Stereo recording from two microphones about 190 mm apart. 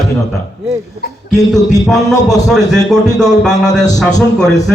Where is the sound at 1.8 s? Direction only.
Centre (ahead or behind).